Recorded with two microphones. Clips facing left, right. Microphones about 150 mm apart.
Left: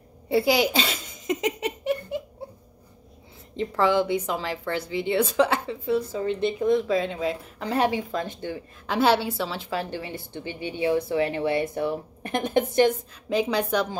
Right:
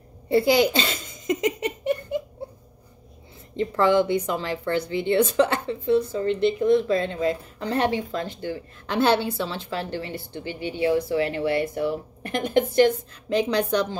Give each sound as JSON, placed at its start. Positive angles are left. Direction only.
{"t": 0.3, "sound": "speech", "side_deg": 5}
{"t": 3.5, "sound": "a woman's voice", "side_deg": 5}
{"t": 8.8, "sound": "a woman's voice", "side_deg": 5}
{"t": 13.3, "sound": "a woman's voice", "side_deg": 5}